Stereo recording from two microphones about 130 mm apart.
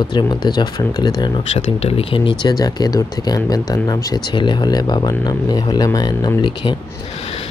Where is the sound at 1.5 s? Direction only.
50° left (ahead or behind).